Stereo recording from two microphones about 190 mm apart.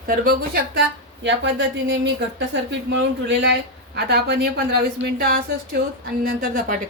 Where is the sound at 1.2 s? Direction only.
70° right (ahead or behind).